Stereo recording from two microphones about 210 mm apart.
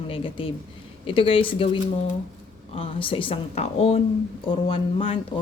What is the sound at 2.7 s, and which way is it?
Speech, 25° left (ahead or behind).